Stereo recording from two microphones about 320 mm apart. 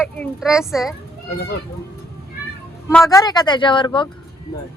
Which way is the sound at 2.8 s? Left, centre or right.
Centre.